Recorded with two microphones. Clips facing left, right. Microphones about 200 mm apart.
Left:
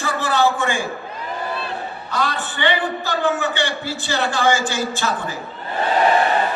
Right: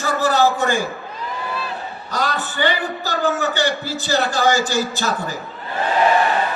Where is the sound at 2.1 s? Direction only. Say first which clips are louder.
Right 1 dB; 40° right (ahead or behind).